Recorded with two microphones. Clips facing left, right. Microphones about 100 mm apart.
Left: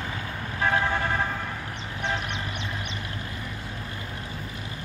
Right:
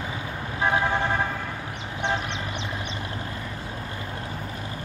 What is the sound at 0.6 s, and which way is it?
Vehicle, 20° right (ahead or behind).